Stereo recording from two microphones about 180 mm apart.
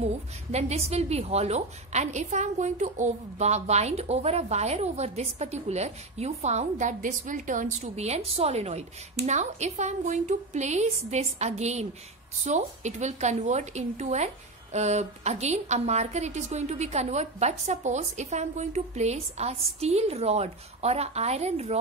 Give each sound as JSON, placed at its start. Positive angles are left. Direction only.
{"t": 0.0, "sound": "a woman's voice", "side_deg": -40}